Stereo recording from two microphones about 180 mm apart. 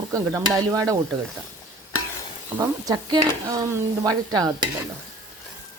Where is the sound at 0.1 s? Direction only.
20° right (ahead or behind).